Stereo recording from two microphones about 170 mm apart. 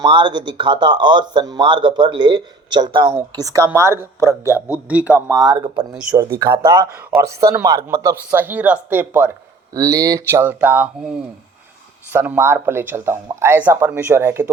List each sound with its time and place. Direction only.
0.0 s speech: 30° right (ahead or behind); by 5.2 s 10° right (ahead or behind)
5.4 s speech: 25° right (ahead or behind)
5.9 s speech: 5° right (ahead or behind)
6.4 s speech: 20° right (ahead or behind)
12.1 s speech: 10° right (ahead or behind)